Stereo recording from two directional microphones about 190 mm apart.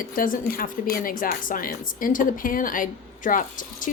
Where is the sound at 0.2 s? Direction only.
50° left (ahead or behind).